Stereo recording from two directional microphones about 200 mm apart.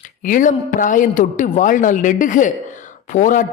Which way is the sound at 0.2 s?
40° left (ahead or behind).